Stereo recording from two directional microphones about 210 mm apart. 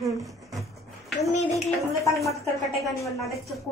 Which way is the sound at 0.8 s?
Centre (ahead or behind).